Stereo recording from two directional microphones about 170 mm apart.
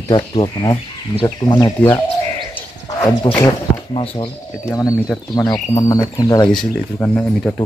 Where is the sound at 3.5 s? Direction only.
30° left (ahead or behind).